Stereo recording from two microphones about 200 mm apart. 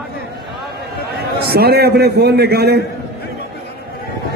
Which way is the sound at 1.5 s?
50° right (ahead or behind).